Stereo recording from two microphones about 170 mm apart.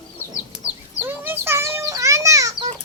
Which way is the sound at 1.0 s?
10° right (ahead or behind).